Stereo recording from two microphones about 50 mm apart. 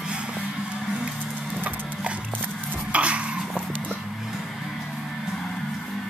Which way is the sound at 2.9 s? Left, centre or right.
Right.